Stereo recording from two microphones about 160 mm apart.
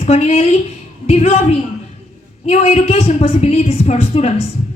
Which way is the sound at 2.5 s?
45° left (ahead or behind).